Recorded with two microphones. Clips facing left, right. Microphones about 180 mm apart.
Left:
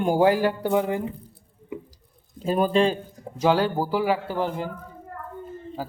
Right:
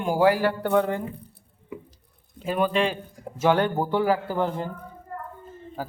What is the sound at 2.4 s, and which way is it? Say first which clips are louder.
Speech: left 3 dB; 35° left (ahead or behind).